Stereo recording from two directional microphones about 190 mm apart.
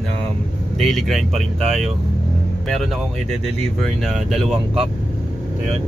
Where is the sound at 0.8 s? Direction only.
Centre (ahead or behind).